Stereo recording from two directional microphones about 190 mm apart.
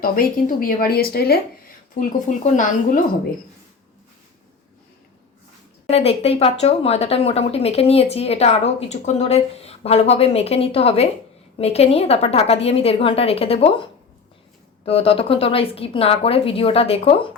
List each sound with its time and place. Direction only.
0.0 s speech: 50° left (ahead or behind)
2.0 s speech: 45° left (ahead or behind)
5.9 s speech: 35° left (ahead or behind)
14.8 s speech: 30° left (ahead or behind)